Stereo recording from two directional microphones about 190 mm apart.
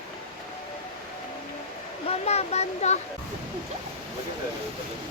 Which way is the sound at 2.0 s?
35° left (ahead or behind).